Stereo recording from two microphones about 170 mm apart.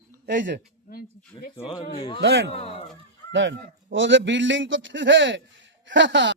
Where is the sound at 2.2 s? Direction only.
90° right.